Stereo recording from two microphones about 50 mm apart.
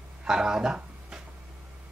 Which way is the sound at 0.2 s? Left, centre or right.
Centre.